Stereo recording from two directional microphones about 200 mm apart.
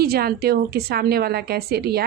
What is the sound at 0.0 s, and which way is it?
A woman's voice, 50° right (ahead or behind).